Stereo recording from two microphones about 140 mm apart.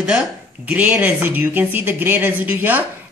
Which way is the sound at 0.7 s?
15° right (ahead or behind).